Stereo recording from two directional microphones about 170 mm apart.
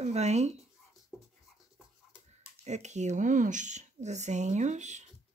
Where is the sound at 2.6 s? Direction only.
45° right (ahead or behind).